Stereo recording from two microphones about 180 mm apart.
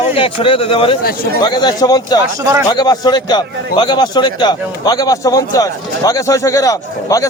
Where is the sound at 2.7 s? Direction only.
20° left (ahead or behind).